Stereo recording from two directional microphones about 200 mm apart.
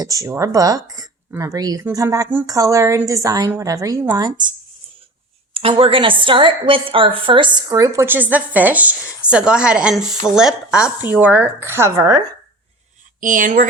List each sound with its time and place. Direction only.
0.0 s a woman's voice: 15° right (ahead or behind)
5.5 s a woman's voice: 30° right (ahead or behind)
13.1 s speech: 40° right (ahead or behind)